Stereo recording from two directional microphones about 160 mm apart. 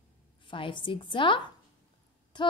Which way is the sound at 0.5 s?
30° left (ahead or behind).